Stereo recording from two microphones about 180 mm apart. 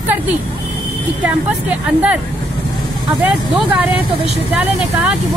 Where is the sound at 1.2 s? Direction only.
10° right (ahead or behind).